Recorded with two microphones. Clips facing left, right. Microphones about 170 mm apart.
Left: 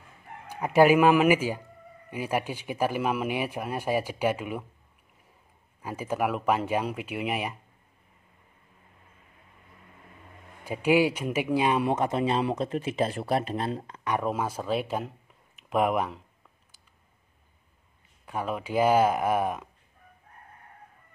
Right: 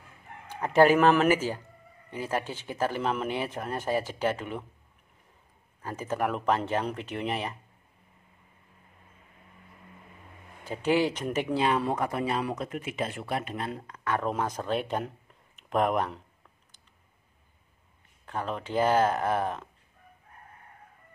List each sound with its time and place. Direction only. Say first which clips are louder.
0.5 s speech: left 1 dB; 10° left (ahead or behind)
5.8 s speech: left 1 dB; 10° left (ahead or behind)
10.6 s speech: left 3 dB; 10° left (ahead or behind); by 14.1 s 25° left (ahead or behind)
14.1 s speech: left 1 dB; 5° left (ahead or behind)
18.2 s speech: left 2 dB; 10° left (ahead or behind)